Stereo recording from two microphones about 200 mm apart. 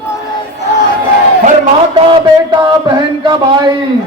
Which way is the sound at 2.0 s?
25° right (ahead or behind).